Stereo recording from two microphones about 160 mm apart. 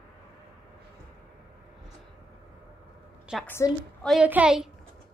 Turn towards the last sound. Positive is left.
turn(degrees=-5)  # may be behind; listen again after turning